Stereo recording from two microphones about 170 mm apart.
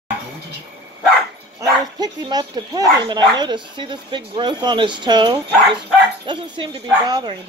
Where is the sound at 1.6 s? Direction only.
25° right (ahead or behind).